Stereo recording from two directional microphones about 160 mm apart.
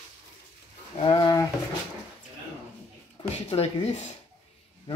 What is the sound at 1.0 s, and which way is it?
Speech, 25° left (ahead or behind).